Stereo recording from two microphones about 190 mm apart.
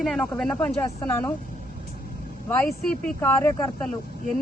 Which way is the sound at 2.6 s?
5° left (ahead or behind).